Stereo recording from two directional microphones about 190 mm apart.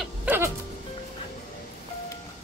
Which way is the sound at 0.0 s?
10° right (ahead or behind).